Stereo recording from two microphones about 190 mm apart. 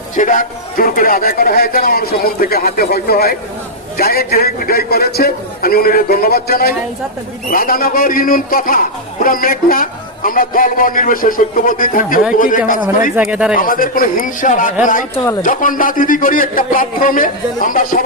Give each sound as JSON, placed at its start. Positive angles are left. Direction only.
{"t": 0.2, "sound": "a man's voice", "side_deg": 45}
{"t": 13.1, "sound": "speech", "side_deg": -5}
{"t": 13.6, "sound": "a man's voice", "side_deg": 50}